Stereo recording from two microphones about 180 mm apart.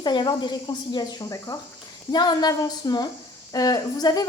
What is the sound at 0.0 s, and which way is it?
Speech, 25° left (ahead or behind).